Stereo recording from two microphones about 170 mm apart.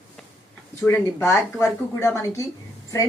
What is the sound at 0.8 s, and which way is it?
A woman's voice, 10° left (ahead or behind).